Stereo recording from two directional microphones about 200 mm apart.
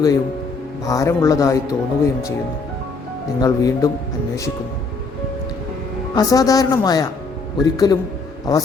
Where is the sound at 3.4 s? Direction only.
15° left (ahead or behind).